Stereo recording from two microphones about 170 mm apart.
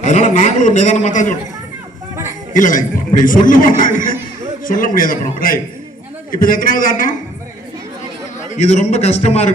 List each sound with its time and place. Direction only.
0.0 s a man's voice: 45° left (ahead or behind)
2.5 s a man's voice: 50° left (ahead or behind)
8.4 s a man's voice: 45° left (ahead or behind)